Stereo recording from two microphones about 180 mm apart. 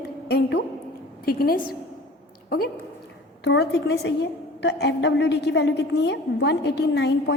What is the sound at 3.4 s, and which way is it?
A woman's voice, 70° left (ahead or behind).